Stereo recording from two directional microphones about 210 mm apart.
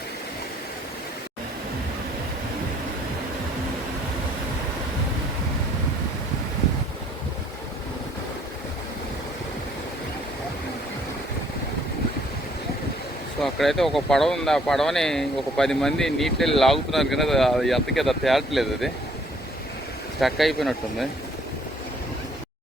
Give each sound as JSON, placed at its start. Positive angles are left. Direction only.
{"t": 13.4, "sound": "speech", "side_deg": 0}
{"t": 20.1, "sound": "speech", "side_deg": 0}